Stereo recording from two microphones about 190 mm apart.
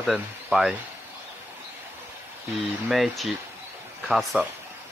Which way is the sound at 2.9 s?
Centre (ahead or behind).